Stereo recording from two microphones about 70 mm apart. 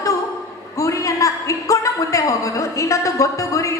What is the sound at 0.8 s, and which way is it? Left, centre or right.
A woman's voice, left.